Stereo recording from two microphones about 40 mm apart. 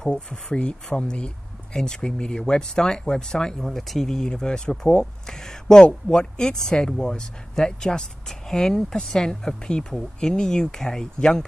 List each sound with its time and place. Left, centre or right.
0.1 s speech: left
3.6 s speech: centre